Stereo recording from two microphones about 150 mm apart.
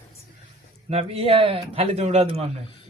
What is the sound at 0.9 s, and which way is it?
A man's voice, 45° right (ahead or behind).